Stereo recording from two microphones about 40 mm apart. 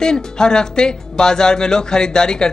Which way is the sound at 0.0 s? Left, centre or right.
Centre.